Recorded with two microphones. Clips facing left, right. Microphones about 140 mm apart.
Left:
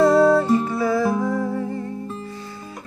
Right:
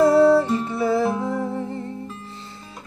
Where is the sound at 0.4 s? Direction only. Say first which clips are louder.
Left 3 dB; 15° left (ahead or behind).